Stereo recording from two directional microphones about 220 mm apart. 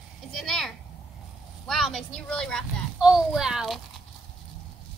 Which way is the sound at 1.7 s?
Centre (ahead or behind).